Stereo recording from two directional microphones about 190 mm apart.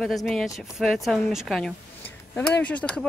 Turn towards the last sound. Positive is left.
turn(degrees=5)  # may be behind; listen again after turning